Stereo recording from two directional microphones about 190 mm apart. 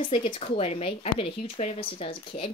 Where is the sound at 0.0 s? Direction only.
30° left (ahead or behind).